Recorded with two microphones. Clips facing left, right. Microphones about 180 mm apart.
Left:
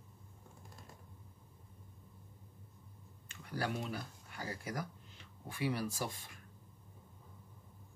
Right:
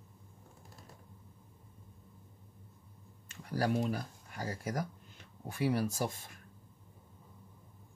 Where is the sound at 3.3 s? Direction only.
40° right (ahead or behind).